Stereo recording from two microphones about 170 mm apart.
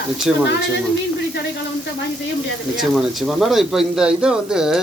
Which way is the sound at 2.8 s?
Centre (ahead or behind).